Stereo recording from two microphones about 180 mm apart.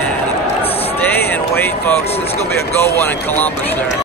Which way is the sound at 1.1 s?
10° left (ahead or behind).